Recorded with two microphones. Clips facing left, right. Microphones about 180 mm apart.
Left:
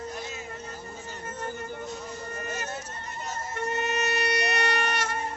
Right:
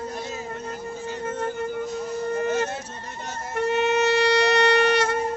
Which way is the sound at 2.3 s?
90° right.